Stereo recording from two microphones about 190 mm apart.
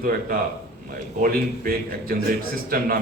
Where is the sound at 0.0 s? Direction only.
50° right (ahead or behind).